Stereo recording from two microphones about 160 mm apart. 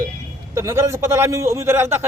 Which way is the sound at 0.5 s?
15° right (ahead or behind).